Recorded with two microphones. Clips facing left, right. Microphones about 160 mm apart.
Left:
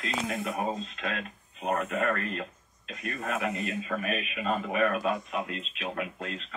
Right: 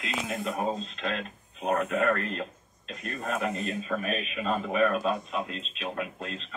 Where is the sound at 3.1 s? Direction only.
35° right (ahead or behind).